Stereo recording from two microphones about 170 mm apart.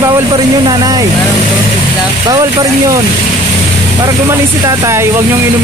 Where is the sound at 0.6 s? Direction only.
20° right (ahead or behind).